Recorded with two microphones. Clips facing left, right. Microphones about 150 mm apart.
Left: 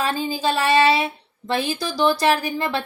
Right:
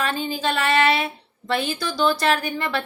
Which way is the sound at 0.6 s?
15° left (ahead or behind).